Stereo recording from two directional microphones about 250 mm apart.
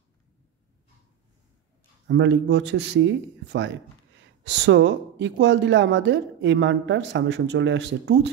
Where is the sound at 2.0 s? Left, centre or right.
Right.